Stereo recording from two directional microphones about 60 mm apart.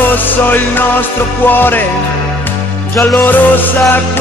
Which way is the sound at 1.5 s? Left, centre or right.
Left.